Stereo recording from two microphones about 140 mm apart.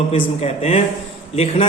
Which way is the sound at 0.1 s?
50° left (ahead or behind).